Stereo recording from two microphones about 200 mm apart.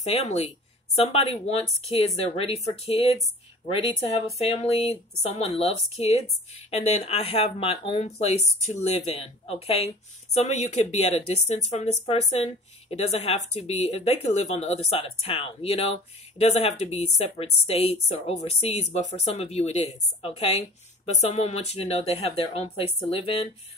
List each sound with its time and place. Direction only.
0.0 s a woman's voice: 35° left (ahead or behind)